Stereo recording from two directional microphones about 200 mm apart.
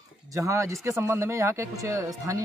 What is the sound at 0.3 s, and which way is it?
Speech, 15° right (ahead or behind).